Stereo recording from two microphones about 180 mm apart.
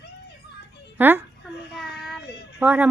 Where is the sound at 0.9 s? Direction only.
10° right (ahead or behind).